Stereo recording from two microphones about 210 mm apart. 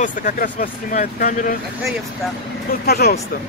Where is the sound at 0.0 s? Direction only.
40° left (ahead or behind).